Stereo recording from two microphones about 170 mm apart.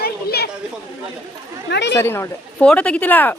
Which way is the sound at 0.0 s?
65° left (ahead or behind).